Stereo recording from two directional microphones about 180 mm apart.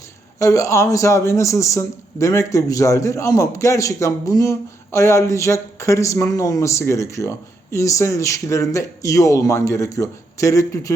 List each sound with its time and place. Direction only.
0.3 s a man's voice: 15° left (ahead or behind)